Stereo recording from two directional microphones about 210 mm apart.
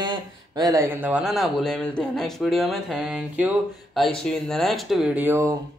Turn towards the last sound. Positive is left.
turn(degrees=-10)  # may be behind; listen again after turning